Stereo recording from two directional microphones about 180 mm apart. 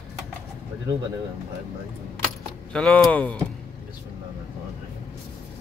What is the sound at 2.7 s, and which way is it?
Speech, 5° left (ahead or behind).